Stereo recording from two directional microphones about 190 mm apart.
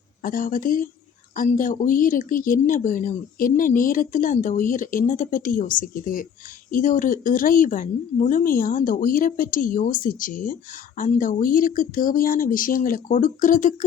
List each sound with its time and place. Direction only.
0.2 s speech: 45° left (ahead or behind)